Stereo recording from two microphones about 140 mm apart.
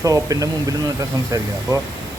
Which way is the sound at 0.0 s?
25° right (ahead or behind).